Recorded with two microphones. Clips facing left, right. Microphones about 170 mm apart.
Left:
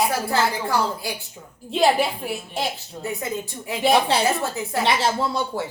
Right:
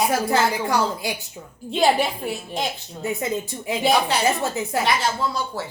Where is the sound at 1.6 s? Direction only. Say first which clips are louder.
Even; centre (ahead or behind).